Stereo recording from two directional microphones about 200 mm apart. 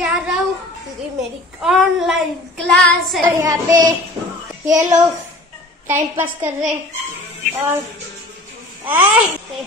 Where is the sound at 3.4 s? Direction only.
15° right (ahead or behind).